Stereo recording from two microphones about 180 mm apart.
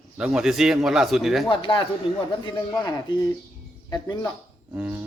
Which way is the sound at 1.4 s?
30° left (ahead or behind).